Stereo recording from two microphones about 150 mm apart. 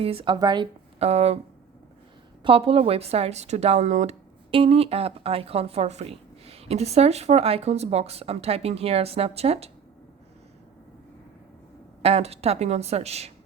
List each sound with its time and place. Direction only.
0.0 s speech: 40° right (ahead or behind)
0.3 s speech: 30° right (ahead or behind)
0.9 s speech: 45° right (ahead or behind)
2.4 s a woman's voice: 40° right (ahead or behind)
12.0 s a woman's voice: 45° right (ahead or behind)